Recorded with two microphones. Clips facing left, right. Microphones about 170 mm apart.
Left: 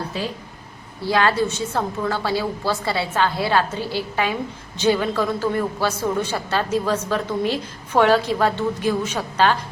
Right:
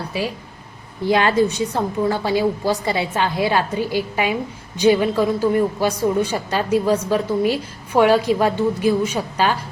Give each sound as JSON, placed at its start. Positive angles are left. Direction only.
{"t": 1.0, "sound": "a woman's voice", "side_deg": -20}